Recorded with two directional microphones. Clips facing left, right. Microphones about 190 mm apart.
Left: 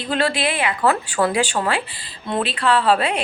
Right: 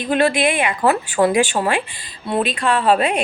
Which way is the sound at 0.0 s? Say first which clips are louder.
Right 4 dB; 15° right (ahead or behind).